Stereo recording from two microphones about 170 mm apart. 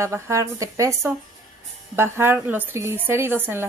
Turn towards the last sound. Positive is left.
turn(degrees=-15)  # may be behind; listen again after turning